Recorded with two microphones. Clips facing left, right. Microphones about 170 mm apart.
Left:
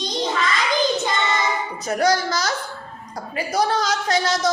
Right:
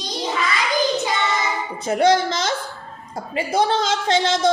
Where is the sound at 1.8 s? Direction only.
25° right (ahead or behind).